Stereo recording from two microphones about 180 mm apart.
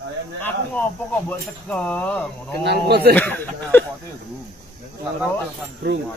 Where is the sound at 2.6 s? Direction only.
65° right (ahead or behind).